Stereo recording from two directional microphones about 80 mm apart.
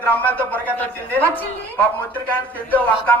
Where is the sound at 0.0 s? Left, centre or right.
Left.